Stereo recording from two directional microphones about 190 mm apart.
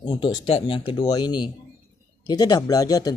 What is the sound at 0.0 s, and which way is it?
Speech, 25° left (ahead or behind).